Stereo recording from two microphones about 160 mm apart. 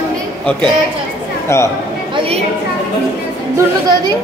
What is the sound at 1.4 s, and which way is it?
Speech, 15° left (ahead or behind).